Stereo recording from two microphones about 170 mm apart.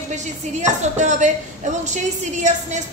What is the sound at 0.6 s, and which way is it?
Speech, 45° right (ahead or behind).